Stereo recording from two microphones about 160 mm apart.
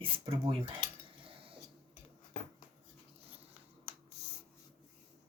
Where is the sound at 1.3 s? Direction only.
35° right (ahead or behind).